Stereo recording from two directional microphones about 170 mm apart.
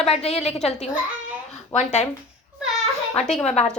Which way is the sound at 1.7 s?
40° left (ahead or behind).